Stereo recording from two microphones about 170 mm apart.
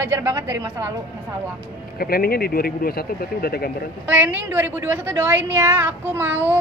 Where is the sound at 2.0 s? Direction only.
60° left (ahead or behind).